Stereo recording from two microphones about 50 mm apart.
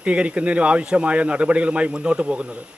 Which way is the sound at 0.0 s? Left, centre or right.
Right.